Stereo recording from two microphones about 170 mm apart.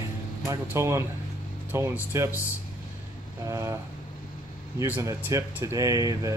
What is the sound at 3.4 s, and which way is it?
Speech, 15° right (ahead or behind).